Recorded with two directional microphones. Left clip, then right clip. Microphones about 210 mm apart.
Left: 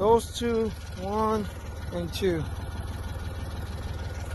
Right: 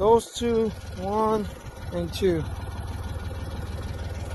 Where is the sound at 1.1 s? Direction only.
10° right (ahead or behind).